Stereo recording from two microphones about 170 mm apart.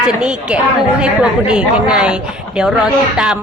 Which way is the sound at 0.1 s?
5° right (ahead or behind).